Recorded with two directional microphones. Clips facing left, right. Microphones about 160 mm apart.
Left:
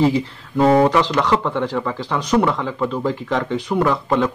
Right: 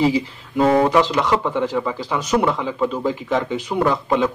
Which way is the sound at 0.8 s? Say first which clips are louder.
Even; 10° right (ahead or behind).